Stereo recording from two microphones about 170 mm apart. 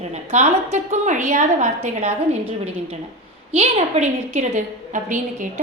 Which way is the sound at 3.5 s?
35° right (ahead or behind).